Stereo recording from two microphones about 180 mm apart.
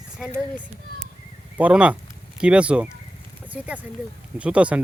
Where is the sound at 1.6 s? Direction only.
5° right (ahead or behind).